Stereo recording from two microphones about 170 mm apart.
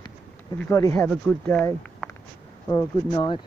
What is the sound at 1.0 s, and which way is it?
Speech, 5° left (ahead or behind).